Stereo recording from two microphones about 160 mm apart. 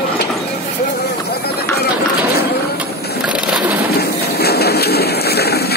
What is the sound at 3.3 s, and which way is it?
Crushing, 5° right (ahead or behind).